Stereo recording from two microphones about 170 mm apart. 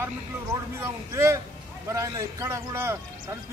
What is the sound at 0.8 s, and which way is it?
A man's voice, 15° right (ahead or behind).